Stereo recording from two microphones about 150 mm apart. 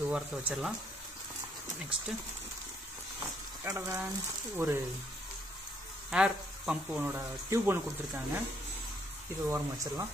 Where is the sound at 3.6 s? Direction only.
15° right (ahead or behind).